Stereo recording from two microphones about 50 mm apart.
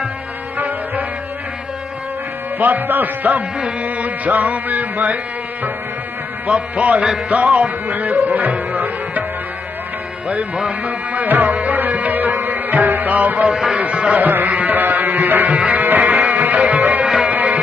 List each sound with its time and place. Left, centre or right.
0.6 s music: right
2.6 s music: right
10.9 s music: right
13.5 s music: centre
13.7 s music: right
14.2 s music: right
17.0 s music: centre
17.3 s music: right